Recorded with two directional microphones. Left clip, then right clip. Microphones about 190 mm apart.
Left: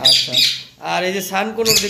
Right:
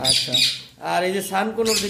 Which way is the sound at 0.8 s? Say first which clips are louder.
Left 2 dB; 15° right (ahead or behind).